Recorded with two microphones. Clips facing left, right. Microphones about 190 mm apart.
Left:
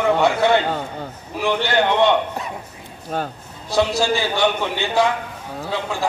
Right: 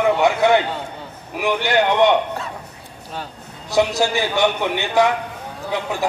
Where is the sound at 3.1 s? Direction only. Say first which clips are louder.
Left 7 dB; 50° left (ahead or behind).